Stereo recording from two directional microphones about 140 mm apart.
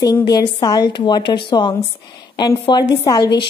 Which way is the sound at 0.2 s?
30° left (ahead or behind).